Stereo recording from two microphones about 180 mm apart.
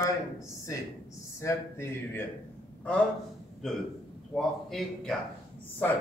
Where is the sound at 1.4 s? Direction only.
15° left (ahead or behind).